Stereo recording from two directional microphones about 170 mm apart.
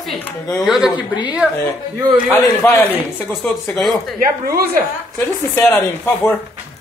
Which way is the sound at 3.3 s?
10° left (ahead or behind).